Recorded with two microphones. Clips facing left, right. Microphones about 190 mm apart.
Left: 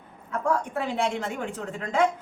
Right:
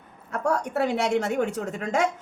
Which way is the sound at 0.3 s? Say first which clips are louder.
Right 1 dB; 75° right (ahead or behind).